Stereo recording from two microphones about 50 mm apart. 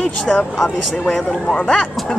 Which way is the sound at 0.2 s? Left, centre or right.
Centre.